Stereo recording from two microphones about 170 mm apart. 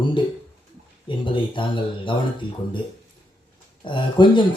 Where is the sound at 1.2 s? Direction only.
30° left (ahead or behind).